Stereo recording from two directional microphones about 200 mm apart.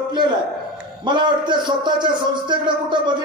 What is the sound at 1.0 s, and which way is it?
Speech, 20° right (ahead or behind).